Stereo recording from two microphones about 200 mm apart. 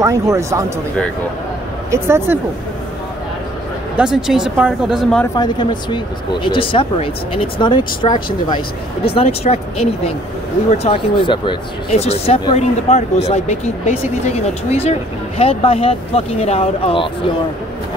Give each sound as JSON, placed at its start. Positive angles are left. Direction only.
{"t": 0.0, "sound": "speech", "side_deg": -15}
{"t": 1.9, "sound": "speech", "side_deg": -10}
{"t": 3.9, "sound": "speech", "side_deg": -5}
{"t": 5.2, "sound": "speech", "side_deg": 20}